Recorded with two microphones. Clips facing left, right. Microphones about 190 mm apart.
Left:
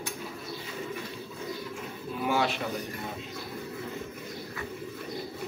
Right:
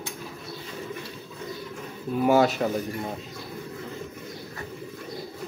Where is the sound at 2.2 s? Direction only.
45° right (ahead or behind).